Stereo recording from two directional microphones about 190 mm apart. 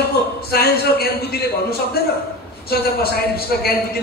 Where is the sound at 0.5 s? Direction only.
55° left (ahead or behind).